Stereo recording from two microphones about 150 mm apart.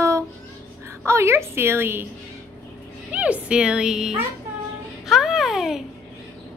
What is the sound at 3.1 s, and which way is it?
A woman's voice, 10° right (ahead or behind).